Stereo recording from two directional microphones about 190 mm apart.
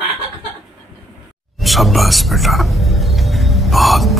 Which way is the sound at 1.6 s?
Centre (ahead or behind).